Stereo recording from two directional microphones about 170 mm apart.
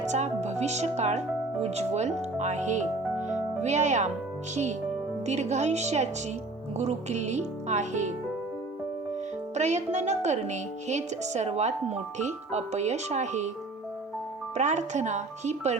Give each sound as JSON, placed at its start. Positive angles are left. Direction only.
{"t": 0.0, "sound": "speech", "side_deg": -40}
{"t": 5.2, "sound": "speech", "side_deg": -40}
{"t": 9.6, "sound": "speech", "side_deg": -40}
{"t": 14.5, "sound": "speech", "side_deg": -45}